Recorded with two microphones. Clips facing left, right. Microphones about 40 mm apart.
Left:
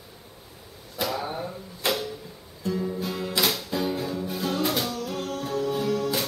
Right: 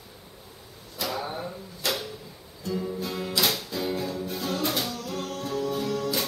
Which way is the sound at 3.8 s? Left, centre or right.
Centre.